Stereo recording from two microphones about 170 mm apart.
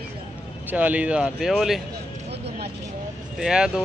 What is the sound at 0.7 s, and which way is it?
Speech, 10° right (ahead or behind).